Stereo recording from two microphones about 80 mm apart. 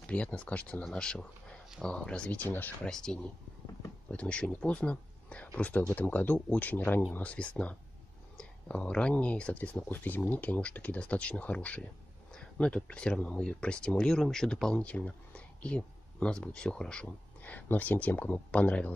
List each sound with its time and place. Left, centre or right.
0.0 s speech: centre
2.8 s speech: centre